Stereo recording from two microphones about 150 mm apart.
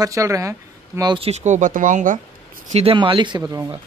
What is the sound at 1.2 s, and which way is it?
Speech, 50° right (ahead or behind).